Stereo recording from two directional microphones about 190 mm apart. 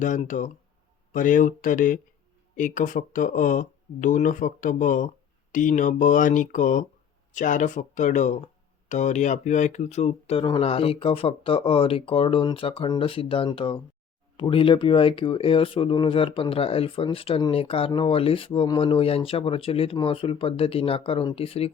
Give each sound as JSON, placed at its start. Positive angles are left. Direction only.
{"t": 0.0, "sound": "speech", "side_deg": 40}